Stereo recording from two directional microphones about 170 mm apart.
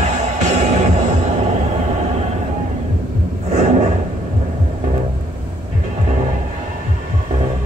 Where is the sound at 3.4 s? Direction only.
40° right (ahead or behind).